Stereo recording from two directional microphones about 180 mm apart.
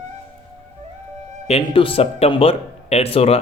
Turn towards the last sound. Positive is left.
turn(degrees=35)  # may be behind; listen again after turning